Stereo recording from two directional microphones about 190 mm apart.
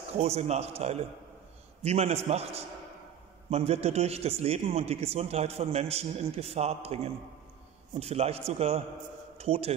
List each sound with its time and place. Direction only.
0.2 s a man's voice: 35° right (ahead or behind)